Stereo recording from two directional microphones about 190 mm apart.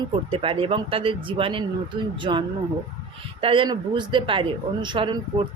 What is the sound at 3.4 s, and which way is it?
Speech, 25° right (ahead or behind).